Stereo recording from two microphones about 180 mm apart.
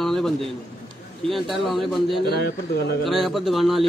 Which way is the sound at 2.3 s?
65° left (ahead or behind).